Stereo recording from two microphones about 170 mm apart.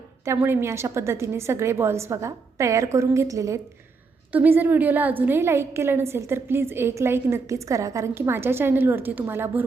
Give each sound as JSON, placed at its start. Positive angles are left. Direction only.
{"t": 0.3, "sound": "a woman's voice", "side_deg": -15}